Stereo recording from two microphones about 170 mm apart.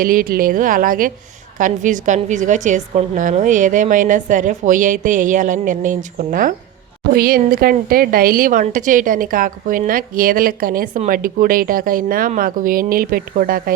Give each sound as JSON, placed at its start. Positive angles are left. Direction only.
{"t": 0.0, "sound": "a woman's voice", "side_deg": -55}